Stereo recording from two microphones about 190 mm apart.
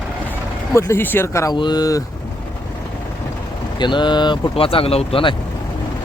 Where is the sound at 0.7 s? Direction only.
15° left (ahead or behind).